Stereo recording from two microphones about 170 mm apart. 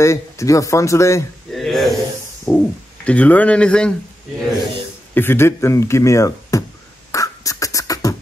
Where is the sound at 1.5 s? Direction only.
Centre (ahead or behind).